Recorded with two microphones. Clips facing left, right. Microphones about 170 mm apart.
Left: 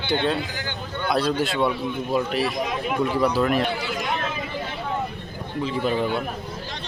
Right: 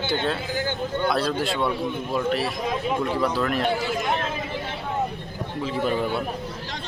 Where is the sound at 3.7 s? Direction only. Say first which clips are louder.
Right 3 dB; 45° right (ahead or behind).